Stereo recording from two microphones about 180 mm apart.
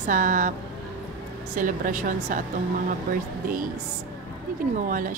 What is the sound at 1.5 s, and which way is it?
A woman's voice, 50° right (ahead or behind).